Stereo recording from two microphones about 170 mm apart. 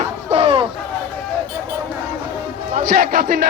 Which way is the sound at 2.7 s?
55° right (ahead or behind).